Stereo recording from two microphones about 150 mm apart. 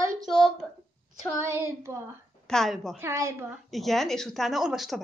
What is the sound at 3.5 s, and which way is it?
A woman's voice, centre (ahead or behind).